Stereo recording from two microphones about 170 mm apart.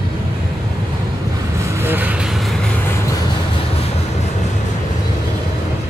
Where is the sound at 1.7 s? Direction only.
10° right (ahead or behind).